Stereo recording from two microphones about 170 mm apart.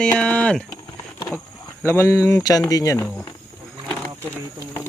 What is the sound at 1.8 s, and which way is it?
Speech, 15° left (ahead or behind).